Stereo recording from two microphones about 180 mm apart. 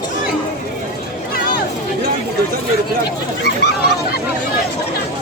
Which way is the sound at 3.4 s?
65° left (ahead or behind).